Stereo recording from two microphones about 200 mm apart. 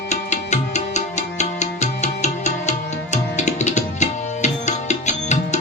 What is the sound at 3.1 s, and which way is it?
Tabla, 35° left (ahead or behind).